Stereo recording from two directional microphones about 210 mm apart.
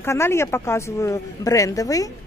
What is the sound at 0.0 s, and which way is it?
Speech, 10° left (ahead or behind).